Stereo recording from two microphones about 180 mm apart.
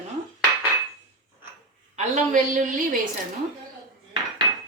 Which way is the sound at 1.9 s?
40° right (ahead or behind).